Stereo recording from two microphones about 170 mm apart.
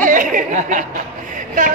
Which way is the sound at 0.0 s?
50° right (ahead or behind).